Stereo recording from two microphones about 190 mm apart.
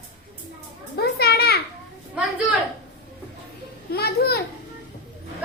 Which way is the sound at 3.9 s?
55° left (ahead or behind).